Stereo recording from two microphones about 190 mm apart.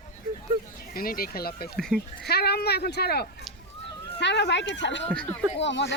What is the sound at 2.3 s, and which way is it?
Speech, 55° left (ahead or behind).